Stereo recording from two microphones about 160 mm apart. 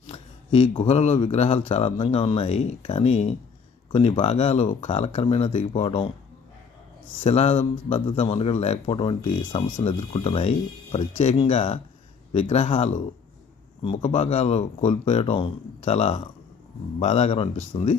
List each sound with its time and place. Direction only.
0.1 s a sound: 35° left (ahead or behind)
0.8 s speech: 45° left (ahead or behind)
7.2 s speech: 40° left (ahead or behind)